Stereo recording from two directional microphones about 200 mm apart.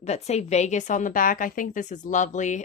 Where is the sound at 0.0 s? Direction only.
35° left (ahead or behind).